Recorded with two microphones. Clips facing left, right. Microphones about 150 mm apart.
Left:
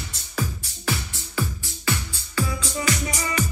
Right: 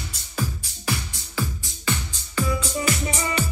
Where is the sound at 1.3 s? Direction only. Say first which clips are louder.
Left 1 dB; 20° right (ahead or behind).